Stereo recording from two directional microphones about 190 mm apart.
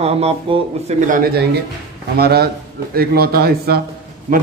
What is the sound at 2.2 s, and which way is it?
A man's voice, 55° right (ahead or behind).